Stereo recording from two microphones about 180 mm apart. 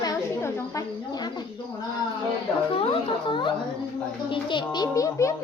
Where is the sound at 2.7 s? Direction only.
30° left (ahead or behind).